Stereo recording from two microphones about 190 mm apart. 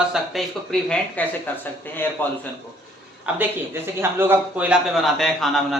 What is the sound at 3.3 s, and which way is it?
A man's voice, 5° right (ahead or behind).